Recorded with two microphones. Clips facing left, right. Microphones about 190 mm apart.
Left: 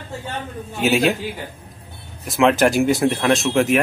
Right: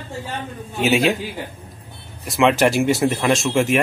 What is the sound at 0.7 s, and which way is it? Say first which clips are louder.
Speech: even; centre (ahead or behind).